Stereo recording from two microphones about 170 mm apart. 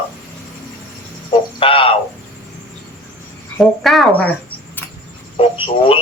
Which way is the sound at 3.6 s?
Centre (ahead or behind).